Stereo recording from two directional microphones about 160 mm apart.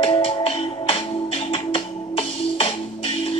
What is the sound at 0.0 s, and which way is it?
Music, 35° left (ahead or behind).